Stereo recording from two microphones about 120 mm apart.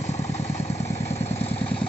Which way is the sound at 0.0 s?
65° left (ahead or behind).